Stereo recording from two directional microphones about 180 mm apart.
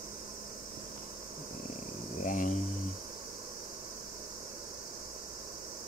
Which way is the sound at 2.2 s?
45° left (ahead or behind).